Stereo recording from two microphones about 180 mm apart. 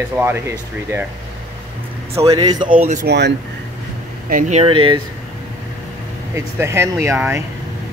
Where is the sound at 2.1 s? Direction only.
20° right (ahead or behind).